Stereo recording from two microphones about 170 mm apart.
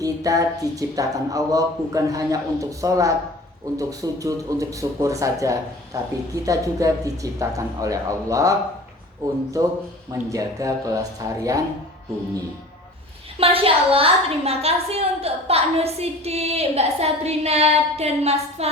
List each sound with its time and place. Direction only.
0.0 s speech: 20° right (ahead or behind)
9.6 s speech: 20° right (ahead or behind)
13.4 s a woman's voice: 35° right (ahead or behind)